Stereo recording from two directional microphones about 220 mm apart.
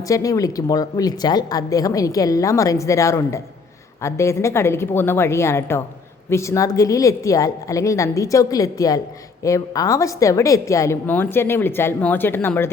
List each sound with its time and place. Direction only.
0.1 s a woman's voice: 15° left (ahead or behind)